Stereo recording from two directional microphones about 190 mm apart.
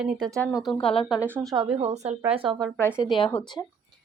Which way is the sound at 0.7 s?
30° left (ahead or behind).